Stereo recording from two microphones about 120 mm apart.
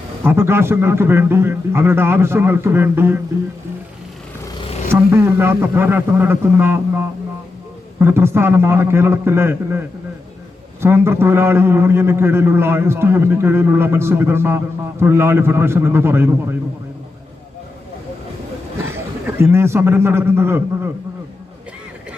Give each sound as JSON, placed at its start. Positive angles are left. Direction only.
{"t": 0.2, "sound": "a man's voice", "side_deg": -20}
{"t": 4.9, "sound": "a man's voice", "side_deg": -20}
{"t": 19.4, "sound": "a man's voice", "side_deg": -20}